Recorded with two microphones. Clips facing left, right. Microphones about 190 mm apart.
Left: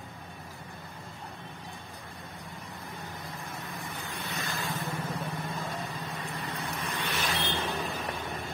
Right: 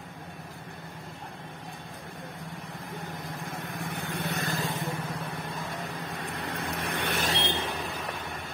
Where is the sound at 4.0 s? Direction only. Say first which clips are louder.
Right 7 dB; 60° right (ahead or behind).